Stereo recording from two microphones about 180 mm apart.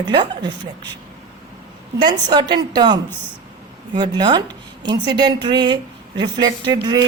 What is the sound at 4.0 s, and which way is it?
A woman's voice, 25° right (ahead or behind).